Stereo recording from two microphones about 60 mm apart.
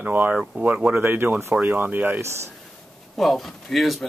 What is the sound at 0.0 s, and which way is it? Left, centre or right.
Speech, right.